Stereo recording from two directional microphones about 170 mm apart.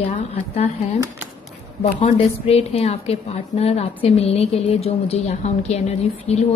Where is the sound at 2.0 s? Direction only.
35° left (ahead or behind).